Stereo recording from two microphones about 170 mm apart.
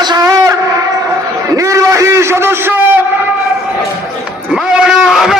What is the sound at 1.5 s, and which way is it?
A man's voice, 20° right (ahead or behind).